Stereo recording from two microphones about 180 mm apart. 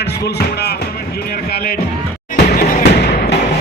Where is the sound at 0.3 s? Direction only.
65° left (ahead or behind).